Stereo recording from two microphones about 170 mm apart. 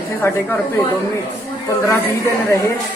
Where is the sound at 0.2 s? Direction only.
15° left (ahead or behind).